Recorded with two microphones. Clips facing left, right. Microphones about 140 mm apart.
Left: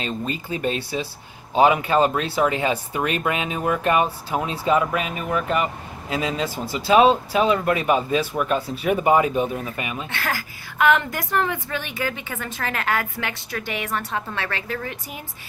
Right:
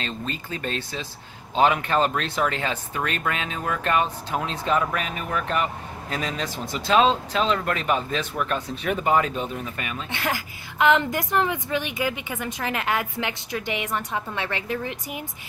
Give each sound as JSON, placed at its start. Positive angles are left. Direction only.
{"t": 0.0, "sound": "speech", "side_deg": 10}
{"t": 10.1, "sound": "a woman's voice", "side_deg": -20}